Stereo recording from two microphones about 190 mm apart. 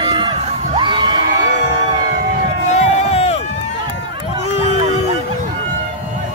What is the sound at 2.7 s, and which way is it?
Crowd, 35° left (ahead or behind).